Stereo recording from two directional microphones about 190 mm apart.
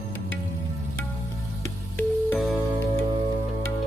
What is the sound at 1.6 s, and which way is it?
Music, 10° left (ahead or behind).